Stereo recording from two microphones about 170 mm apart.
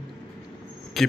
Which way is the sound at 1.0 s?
Centre (ahead or behind).